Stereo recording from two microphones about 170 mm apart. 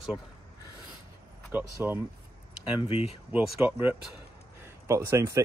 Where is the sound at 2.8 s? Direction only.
35° left (ahead or behind).